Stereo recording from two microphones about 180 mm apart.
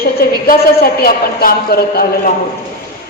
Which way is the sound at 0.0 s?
55° left (ahead or behind).